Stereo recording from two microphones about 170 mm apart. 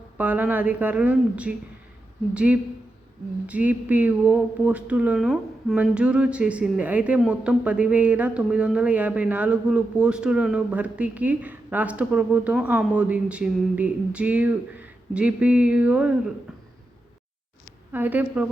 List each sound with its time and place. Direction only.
0.2 s speech: 10° right (ahead or behind)
17.9 s speech: 10° right (ahead or behind)